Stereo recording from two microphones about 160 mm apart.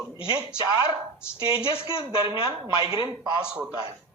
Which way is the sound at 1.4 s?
25° right (ahead or behind).